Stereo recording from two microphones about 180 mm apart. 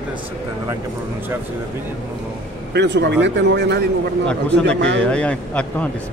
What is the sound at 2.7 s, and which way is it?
Speech, 75° right (ahead or behind).